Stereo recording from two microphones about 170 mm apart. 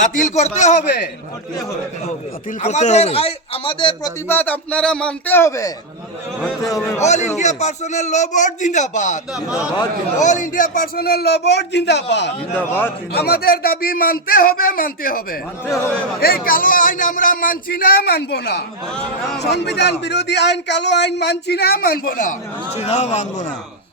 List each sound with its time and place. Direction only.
0.0 s a man's voice: 50° left (ahead or behind)
2.6 s a man's voice: 45° left (ahead or behind)
4.3 s speech: 10° left (ahead or behind)
7.0 s a man's voice: 40° left (ahead or behind)
9.3 s a man's voice: 5° right (ahead or behind)
10.2 s a man's voice: 50° left (ahead or behind); by 12.3 s 90° left
12.5 s speech: 10° left (ahead or behind)
13.1 s a man's voice: 70° left (ahead or behind); by 23.5 s 40° left (ahead or behind)